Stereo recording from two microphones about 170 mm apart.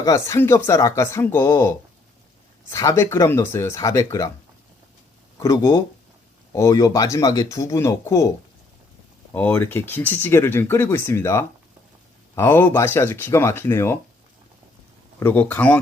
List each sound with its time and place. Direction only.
0.0 s speech: 15° left (ahead or behind)
5.4 s speech: 15° left (ahead or behind)
9.3 s speech: 10° left (ahead or behind)
15.2 s speech: 10° left (ahead or behind)